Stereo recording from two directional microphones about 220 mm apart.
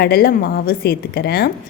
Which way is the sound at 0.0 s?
45° left (ahead or behind).